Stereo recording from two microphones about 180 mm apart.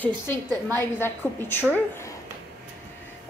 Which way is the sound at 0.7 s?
10° left (ahead or behind).